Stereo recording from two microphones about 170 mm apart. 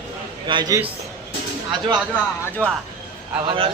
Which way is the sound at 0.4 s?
25° right (ahead or behind).